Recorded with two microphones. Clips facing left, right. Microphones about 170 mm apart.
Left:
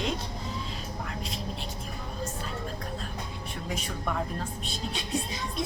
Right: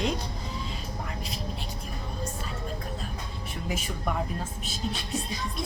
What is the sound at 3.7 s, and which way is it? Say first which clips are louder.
Speech: right 2 dB; 5° right (ahead or behind).